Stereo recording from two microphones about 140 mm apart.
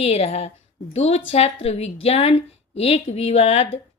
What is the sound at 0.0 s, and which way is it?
Speech, 50° left (ahead or behind).